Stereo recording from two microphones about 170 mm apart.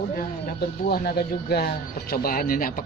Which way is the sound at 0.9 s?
65° left (ahead or behind).